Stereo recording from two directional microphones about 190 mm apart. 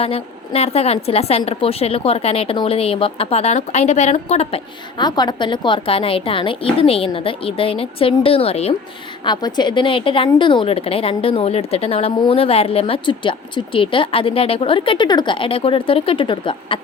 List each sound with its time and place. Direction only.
0.0 s a woman's voice: 30° left (ahead or behind)